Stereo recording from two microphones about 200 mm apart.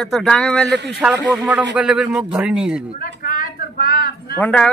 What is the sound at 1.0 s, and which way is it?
A man's voice, 10° right (ahead or behind).